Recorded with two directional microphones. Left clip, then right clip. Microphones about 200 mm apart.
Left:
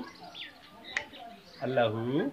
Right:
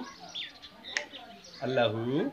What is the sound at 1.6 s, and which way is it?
Speech, 5° right (ahead or behind).